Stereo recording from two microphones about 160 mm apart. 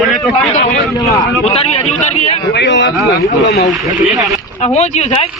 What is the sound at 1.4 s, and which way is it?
Speech, 40° left (ahead or behind).